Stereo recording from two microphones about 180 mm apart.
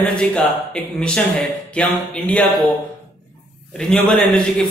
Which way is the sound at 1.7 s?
5° left (ahead or behind).